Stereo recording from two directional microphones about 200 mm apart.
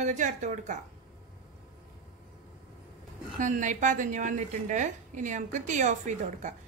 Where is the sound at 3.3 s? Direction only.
40° right (ahead or behind).